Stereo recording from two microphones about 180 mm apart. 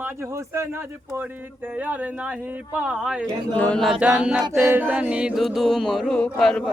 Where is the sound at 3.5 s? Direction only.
5° left (ahead or behind).